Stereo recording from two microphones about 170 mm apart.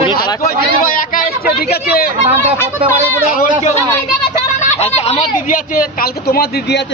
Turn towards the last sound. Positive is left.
turn(degrees=60)  # may be behind; listen again after turning